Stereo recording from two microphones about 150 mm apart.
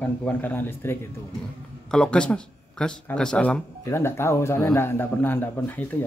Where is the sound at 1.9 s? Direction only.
5° left (ahead or behind).